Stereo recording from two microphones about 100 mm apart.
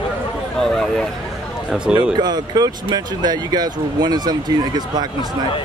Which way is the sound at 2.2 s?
40° right (ahead or behind).